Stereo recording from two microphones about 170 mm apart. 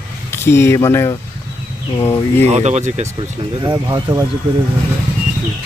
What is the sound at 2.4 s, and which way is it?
Speech, 40° right (ahead or behind).